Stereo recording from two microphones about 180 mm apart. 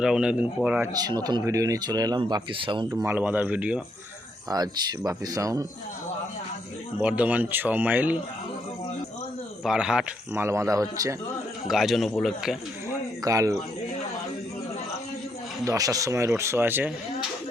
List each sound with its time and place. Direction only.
0.0 s speech: 5° right (ahead or behind)
0.9 s speech: 20° right (ahead or behind)
4.4 s speech: 20° right (ahead or behind)
7.0 s speech: 10° right (ahead or behind)
9.6 s speech: 5° right (ahead or behind)
11.7 s speech: centre (ahead or behind)
13.2 s speech: 20° right (ahead or behind)
15.6 s speech: 20° right (ahead or behind)